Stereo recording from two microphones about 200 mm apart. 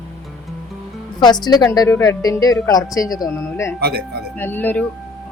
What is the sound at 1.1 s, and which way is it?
A woman's voice, 20° left (ahead or behind).